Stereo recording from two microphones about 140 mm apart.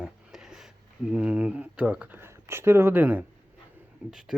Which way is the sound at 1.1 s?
10° right (ahead or behind).